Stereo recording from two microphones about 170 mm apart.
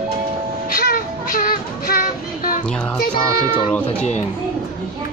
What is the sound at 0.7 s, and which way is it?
Child singing, 55° left (ahead or behind).